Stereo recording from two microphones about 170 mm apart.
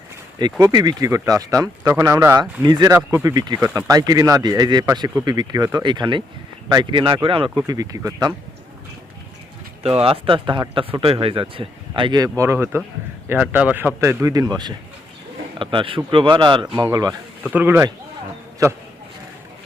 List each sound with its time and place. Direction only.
0.6 s speech: 25° right (ahead or behind)
9.8 s speech: 35° right (ahead or behind)
12.4 s speech: 15° right (ahead or behind)
17.5 s speech: 10° right (ahead or behind)